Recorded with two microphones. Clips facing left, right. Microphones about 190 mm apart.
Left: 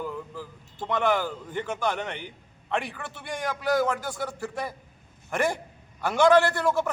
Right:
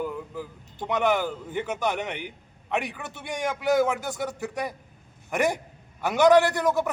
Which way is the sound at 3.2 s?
20° right (ahead or behind).